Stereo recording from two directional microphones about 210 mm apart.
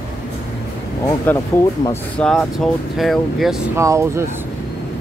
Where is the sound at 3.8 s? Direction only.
15° right (ahead or behind).